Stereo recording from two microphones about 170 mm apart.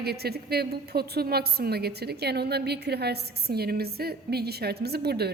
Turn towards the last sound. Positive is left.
turn(degrees=-70)  # may be behind; listen again after turning